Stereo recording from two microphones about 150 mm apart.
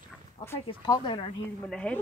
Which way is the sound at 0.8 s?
35° left (ahead or behind).